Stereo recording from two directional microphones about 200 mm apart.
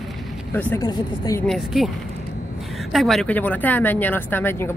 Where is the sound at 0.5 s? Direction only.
10° left (ahead or behind).